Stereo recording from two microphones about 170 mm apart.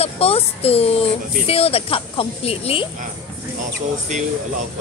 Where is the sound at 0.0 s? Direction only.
35° left (ahead or behind).